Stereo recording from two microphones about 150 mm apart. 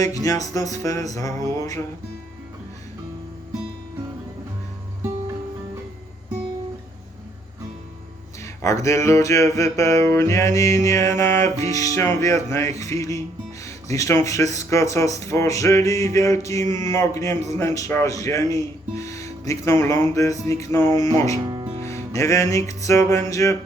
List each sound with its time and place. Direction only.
0.0 s speech: 25° left (ahead or behind)
8.4 s speech: 20° left (ahead or behind)
22.1 s speech: 20° left (ahead or behind)